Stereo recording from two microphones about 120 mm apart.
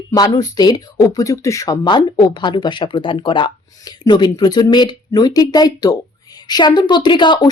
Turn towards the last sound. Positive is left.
turn(degrees=40)  # may be behind; listen again after turning